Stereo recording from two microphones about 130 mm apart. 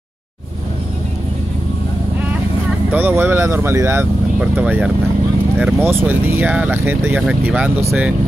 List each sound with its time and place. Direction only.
2.9 s speech: 15° right (ahead or behind)